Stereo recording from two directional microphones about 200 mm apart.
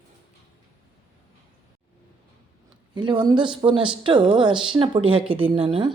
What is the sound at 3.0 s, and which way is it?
Speech, 25° right (ahead or behind).